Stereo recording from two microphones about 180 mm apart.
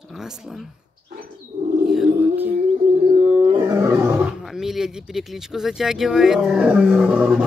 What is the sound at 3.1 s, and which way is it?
Wild animals, 30° right (ahead or behind).